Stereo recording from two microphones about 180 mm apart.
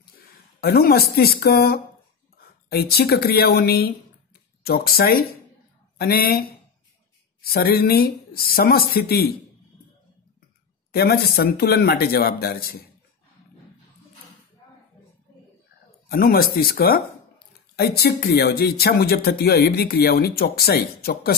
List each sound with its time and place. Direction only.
0.6 s speech: 60° left (ahead or behind)
7.5 s speech: 55° left (ahead or behind)
10.9 s speech: 60° left (ahead or behind)
16.1 s speech: 55° left (ahead or behind)